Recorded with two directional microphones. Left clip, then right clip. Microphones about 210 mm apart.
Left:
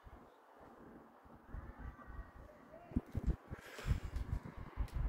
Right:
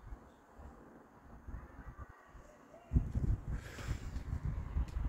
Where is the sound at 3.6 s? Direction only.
20° right (ahead or behind).